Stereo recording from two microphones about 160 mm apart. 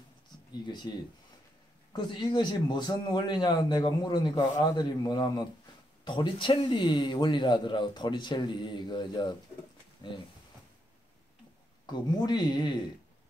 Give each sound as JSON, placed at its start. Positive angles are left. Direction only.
{"t": 0.7, "sound": "a man's voice", "side_deg": 30}
{"t": 11.8, "sound": "a man's voice", "side_deg": 25}